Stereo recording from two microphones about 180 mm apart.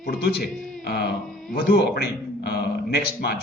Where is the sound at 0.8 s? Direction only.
65° left (ahead or behind).